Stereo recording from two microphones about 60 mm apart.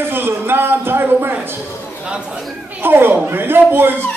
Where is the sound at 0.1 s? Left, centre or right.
Right.